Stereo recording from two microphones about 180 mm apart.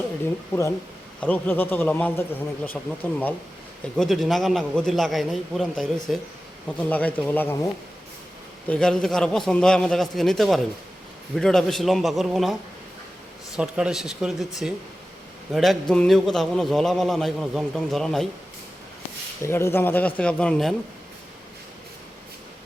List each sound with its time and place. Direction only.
1.2 s a man's voice: 10° left (ahead or behind)
8.6 s a man's voice: 5° left (ahead or behind)
13.6 s a man's voice: 5° right (ahead or behind)
19.4 s speech: 15° left (ahead or behind)